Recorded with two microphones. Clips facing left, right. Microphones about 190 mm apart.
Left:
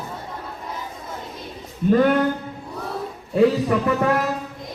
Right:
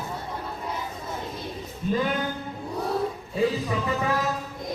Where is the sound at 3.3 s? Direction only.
65° left (ahead or behind).